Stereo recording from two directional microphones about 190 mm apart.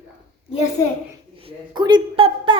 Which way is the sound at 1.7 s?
25° right (ahead or behind).